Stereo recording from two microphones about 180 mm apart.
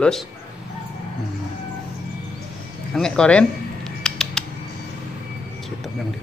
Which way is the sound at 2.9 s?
5° left (ahead or behind).